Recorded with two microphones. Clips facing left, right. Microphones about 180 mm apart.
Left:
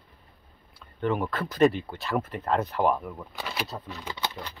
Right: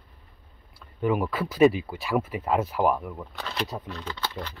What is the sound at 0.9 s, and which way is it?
Speech, 5° right (ahead or behind).